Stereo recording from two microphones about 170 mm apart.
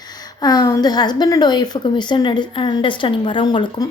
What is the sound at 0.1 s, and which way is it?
A woman's voice, 25° left (ahead or behind).